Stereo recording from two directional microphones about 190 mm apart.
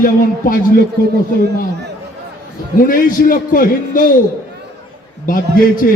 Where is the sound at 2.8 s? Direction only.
45° left (ahead or behind).